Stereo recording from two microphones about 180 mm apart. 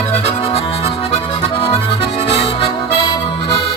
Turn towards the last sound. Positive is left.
turn(degrees=25)  # may be behind; listen again after turning